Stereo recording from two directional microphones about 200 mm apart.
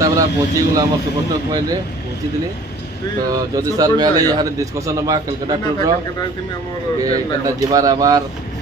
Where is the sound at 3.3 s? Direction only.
20° right (ahead or behind).